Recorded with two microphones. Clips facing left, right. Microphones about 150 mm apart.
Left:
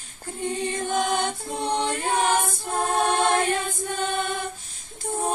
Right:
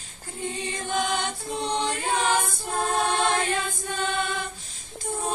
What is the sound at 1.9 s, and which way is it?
Mantra, 50° left (ahead or behind).